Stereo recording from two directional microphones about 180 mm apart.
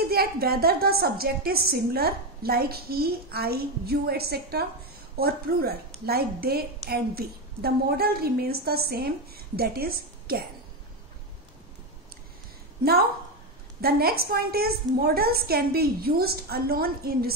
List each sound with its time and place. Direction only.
0.1 s a woman's voice: 60° right (ahead or behind)
13.7 s a woman's voice: 60° right (ahead or behind)